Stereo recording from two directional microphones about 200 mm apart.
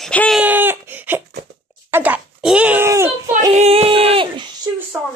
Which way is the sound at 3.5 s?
30° right (ahead or behind).